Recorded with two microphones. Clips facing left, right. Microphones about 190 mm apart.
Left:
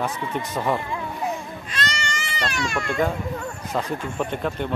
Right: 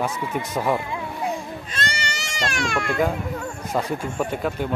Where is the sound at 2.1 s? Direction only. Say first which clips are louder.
Right 1 dB; 85° right.